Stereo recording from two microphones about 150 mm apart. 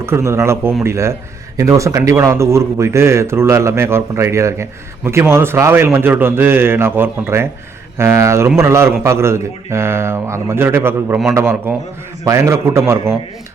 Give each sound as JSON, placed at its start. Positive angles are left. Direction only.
{"t": 0.0, "sound": "a man's voice", "side_deg": -15}